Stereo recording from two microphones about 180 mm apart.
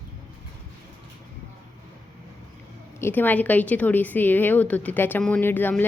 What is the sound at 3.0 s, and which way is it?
A woman's voice, 10° left (ahead or behind).